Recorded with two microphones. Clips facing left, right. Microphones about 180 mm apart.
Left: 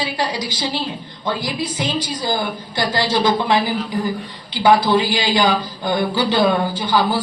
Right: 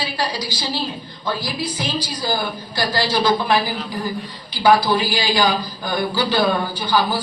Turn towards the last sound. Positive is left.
turn(degrees=25)  # may be behind; listen again after turning